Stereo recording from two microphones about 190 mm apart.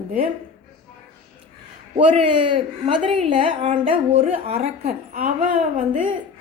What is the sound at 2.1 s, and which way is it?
A woman's voice, 30° right (ahead or behind).